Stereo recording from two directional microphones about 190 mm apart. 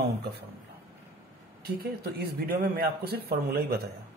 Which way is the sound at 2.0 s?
55° right (ahead or behind).